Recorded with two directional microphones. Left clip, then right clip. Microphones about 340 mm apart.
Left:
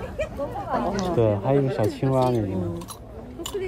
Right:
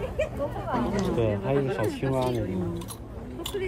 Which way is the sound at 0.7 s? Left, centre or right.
Left.